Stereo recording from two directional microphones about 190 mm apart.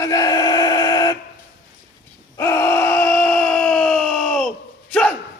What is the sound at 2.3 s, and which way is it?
Groan, 15° left (ahead or behind).